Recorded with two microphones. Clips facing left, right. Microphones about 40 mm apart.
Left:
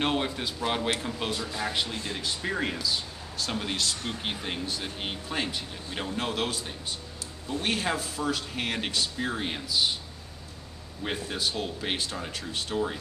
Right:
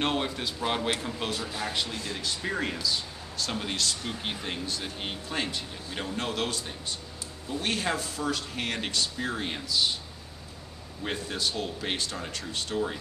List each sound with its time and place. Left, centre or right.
0.0 s speech: centre
11.1 s speech: centre